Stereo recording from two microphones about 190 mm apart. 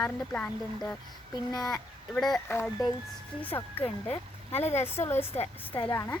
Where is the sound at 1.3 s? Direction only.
20° left (ahead or behind).